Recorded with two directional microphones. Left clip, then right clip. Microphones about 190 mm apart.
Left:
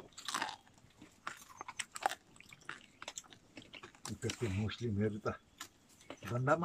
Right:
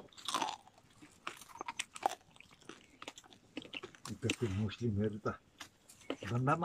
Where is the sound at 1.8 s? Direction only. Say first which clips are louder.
Even; 15° right (ahead or behind).